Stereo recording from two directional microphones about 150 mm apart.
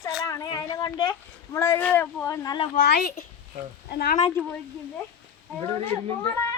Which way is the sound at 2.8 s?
90° left.